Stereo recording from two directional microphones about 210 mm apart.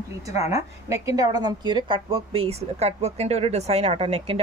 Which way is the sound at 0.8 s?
15° right (ahead or behind).